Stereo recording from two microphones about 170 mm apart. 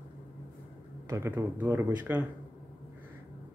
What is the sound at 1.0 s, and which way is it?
Speech, 15° right (ahead or behind).